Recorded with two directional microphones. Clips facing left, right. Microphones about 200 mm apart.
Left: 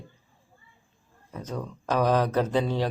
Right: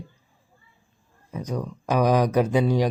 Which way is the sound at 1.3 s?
10° right (ahead or behind).